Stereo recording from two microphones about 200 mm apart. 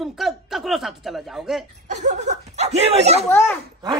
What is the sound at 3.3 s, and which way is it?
Speech, 10° left (ahead or behind).